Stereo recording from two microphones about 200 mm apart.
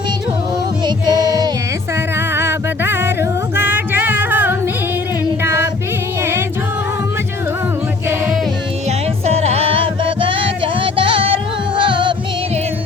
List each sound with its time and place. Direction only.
0.9 s music: 20° right (ahead or behind)
5.4 s child singing: 10° right (ahead or behind)
9.2 s music: 30° right (ahead or behind)